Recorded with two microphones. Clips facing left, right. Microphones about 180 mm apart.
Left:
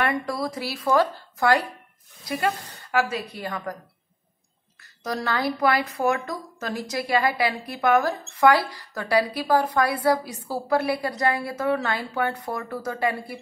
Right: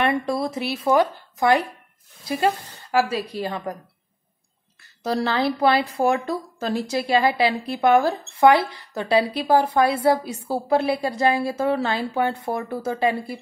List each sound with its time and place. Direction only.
0.0 s a woman's voice: 25° right (ahead or behind)
5.0 s a woman's voice: 30° right (ahead or behind)